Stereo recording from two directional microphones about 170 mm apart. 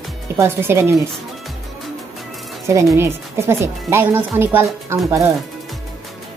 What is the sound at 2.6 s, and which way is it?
Speech, 20° right (ahead or behind).